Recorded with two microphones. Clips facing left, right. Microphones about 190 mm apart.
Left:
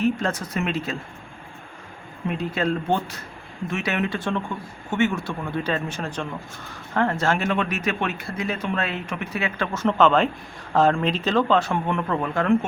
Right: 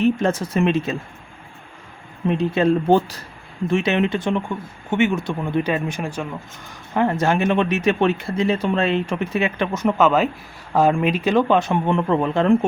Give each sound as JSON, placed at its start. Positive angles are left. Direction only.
{"t": 0.0, "sound": "speech", "side_deg": -25}
{"t": 2.4, "sound": "a man's voice", "side_deg": -25}